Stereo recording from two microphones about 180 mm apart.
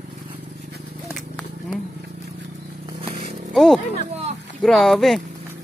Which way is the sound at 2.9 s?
30° right (ahead or behind).